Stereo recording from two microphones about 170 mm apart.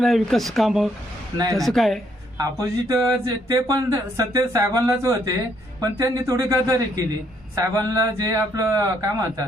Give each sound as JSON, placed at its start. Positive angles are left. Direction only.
{"t": 0.0, "sound": "speech", "side_deg": 0}
{"t": 2.4, "sound": "a man's voice", "side_deg": -20}